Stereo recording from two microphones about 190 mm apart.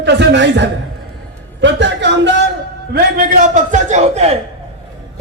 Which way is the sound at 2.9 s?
55° right (ahead or behind).